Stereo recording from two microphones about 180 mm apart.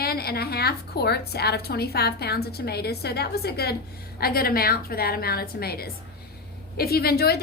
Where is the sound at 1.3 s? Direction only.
65° left (ahead or behind).